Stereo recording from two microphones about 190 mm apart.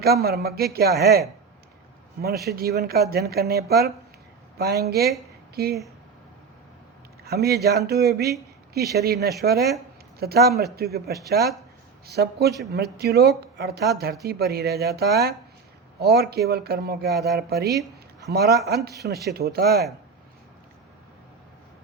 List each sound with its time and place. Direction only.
0.0 s speech: 55° right (ahead or behind)
2.2 s speech: 55° right (ahead or behind)
7.3 s speech: 55° right (ahead or behind)